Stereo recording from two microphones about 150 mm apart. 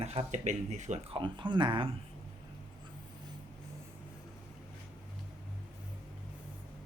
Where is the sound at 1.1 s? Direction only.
30° right (ahead or behind).